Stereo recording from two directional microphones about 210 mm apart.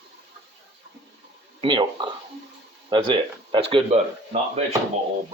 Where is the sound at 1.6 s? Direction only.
20° right (ahead or behind).